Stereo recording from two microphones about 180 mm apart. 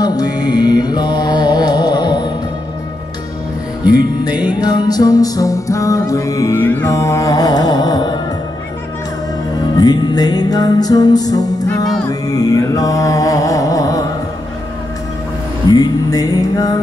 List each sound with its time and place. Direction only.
0.0 s music: 20° left (ahead or behind)
3.9 s music: 25° left (ahead or behind)
9.6 s music: 20° left (ahead or behind)
15.7 s music: 20° left (ahead or behind)